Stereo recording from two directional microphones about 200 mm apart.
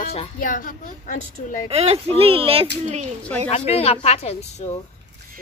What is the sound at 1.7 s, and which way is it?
Speech, 30° right (ahead or behind).